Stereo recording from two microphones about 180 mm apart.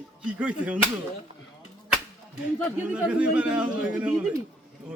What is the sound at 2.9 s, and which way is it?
A man's voice, 5° right (ahead or behind).